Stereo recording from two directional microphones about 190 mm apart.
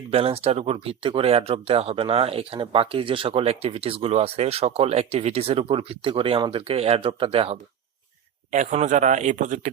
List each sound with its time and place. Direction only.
0.1 s speech: 30° right (ahead or behind)